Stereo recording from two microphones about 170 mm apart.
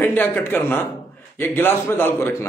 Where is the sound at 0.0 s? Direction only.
10° left (ahead or behind).